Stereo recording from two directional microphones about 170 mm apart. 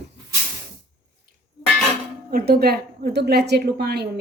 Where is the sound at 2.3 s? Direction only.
60° right (ahead or behind).